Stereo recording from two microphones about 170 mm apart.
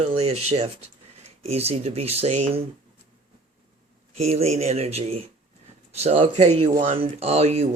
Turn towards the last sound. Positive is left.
turn(degrees=-40)  # may be behind; listen again after turning